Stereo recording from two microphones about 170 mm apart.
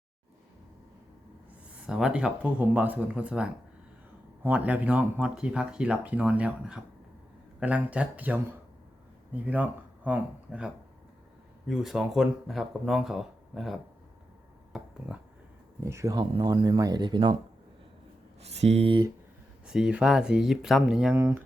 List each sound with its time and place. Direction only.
1.9 s speech: 5° right (ahead or behind)
9.5 s speech: 10° right (ahead or behind)
11.7 s speech: centre (ahead or behind)
14.7 s speech: centre (ahead or behind)
15.8 s speech: 15° right (ahead or behind)
18.4 s speech: 40° right (ahead or behind)
19.6 s speech: 5° right (ahead or behind)
21.2 s speech: 15° right (ahead or behind)